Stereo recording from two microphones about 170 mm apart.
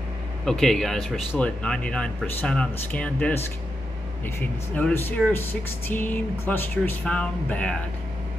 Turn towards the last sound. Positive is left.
turn(degrees=5)  # may be behind; listen again after turning